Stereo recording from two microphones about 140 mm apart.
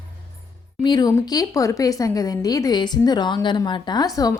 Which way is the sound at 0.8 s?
30° left (ahead or behind).